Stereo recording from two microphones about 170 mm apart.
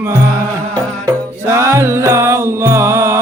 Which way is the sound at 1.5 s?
15° right (ahead or behind).